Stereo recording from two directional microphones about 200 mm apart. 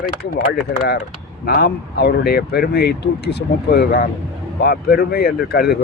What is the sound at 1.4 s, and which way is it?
Speech, 50° left (ahead or behind).